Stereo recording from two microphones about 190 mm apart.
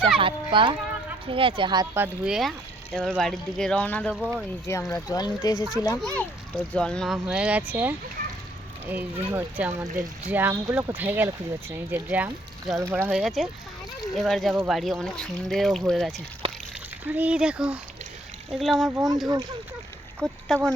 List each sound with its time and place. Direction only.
0.2 s speech: 25° right (ahead or behind)
2.2 s speech: centre (ahead or behind)
4.1 s speech: 5° right (ahead or behind)
5.0 s speech: 20° left (ahead or behind)
6.7 s speech: 5° left (ahead or behind)
16.4 s a sound: 30° right (ahead or behind)
17.1 s speech: 10° right (ahead or behind)
18.9 s speech: 20° right (ahead or behind)
20.2 s speech: 5° left (ahead or behind)